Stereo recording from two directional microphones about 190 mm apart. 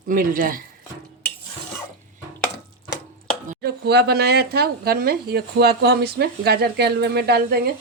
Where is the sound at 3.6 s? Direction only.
60° right (ahead or behind).